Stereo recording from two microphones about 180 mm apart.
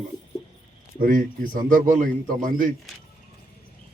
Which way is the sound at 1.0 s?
50° right (ahead or behind).